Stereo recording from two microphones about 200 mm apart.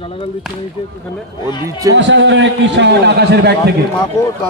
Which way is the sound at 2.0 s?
65° right (ahead or behind).